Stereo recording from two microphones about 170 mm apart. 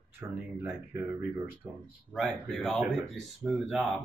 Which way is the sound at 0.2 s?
15° right (ahead or behind).